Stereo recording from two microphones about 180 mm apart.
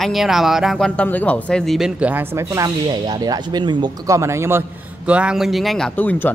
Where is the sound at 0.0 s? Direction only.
Centre (ahead or behind).